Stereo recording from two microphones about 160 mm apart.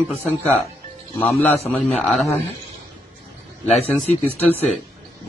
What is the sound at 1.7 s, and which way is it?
Speech, 5° left (ahead or behind).